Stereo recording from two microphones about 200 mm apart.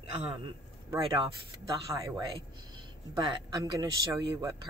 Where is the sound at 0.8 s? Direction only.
20° right (ahead or behind).